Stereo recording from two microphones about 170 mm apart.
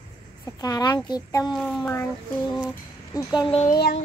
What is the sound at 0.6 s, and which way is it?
Speech, 25° left (ahead or behind).